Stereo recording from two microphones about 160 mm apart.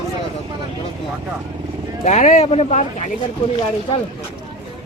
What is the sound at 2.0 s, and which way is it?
Speech, 45° left (ahead or behind).